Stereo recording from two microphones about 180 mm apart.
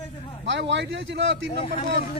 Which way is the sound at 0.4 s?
85° right.